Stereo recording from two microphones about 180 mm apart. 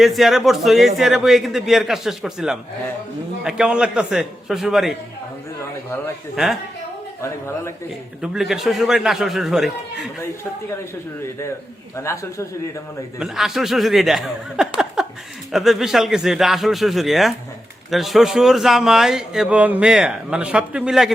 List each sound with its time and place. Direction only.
0.0 s a man's voice: centre (ahead or behind)
6.3 s a man's voice: centre (ahead or behind)
7.2 s a man's voice: 15° left (ahead or behind)
8.2 s a man's voice: 5° right (ahead or behind)
11.9 s a man's voice: 15° left (ahead or behind)
13.1 s a man's voice: centre (ahead or behind)
15.0 s a sound: 5° right (ahead or behind)
15.5 s a man's voice: centre (ahead or behind)